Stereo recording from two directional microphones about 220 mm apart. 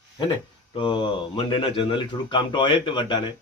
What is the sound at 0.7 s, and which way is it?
Speech, 20° left (ahead or behind).